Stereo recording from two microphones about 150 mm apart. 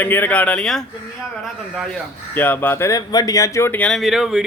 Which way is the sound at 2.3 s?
15° left (ahead or behind).